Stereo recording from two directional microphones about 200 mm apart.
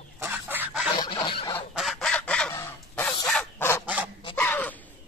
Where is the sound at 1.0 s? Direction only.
25° left (ahead or behind).